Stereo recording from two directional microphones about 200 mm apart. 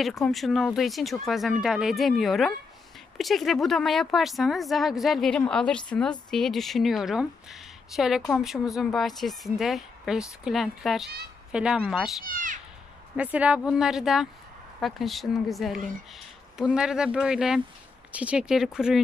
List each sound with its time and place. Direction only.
0.0 s speech: centre (ahead or behind)
12.3 s speech: 40° right (ahead or behind)
13.1 s speech: 5° right (ahead or behind)